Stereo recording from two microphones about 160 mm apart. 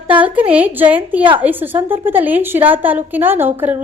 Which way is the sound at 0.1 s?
10° right (ahead or behind).